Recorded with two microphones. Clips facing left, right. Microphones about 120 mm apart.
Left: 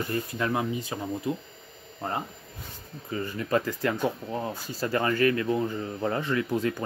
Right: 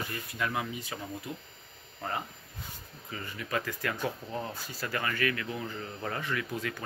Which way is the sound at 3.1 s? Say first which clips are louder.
Left 9 dB; 35° left (ahead or behind).